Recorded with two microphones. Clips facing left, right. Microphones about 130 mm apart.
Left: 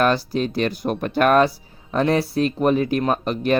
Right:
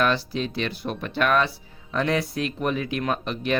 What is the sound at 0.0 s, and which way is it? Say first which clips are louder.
Speech: left 4 dB; 45° left (ahead or behind).